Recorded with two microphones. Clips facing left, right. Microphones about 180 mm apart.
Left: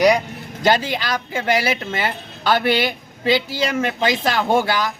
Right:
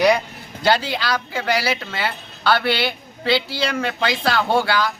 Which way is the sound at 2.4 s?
15° left (ahead or behind).